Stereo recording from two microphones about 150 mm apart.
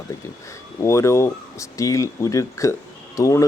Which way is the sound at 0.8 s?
20° left (ahead or behind).